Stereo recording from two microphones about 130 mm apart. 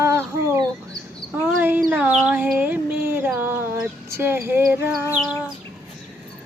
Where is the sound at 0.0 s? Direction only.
20° right (ahead or behind).